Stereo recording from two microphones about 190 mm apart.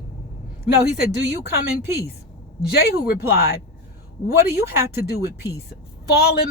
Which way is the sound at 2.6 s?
55° left (ahead or behind).